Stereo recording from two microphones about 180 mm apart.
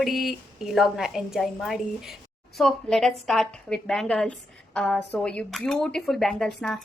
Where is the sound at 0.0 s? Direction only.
Centre (ahead or behind).